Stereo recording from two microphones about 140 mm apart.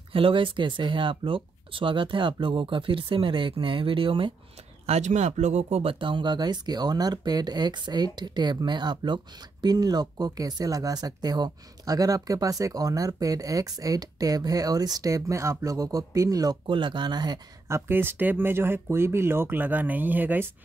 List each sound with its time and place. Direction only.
0.1 s speech: 40° right (ahead or behind)
4.8 s speech: 55° right (ahead or behind); by 16.5 s 25° right (ahead or behind)
16.6 s speech: 35° right (ahead or behind); by 20.4 s 15° right (ahead or behind)